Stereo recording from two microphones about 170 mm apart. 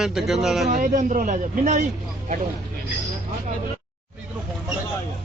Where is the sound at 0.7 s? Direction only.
55° right (ahead or behind).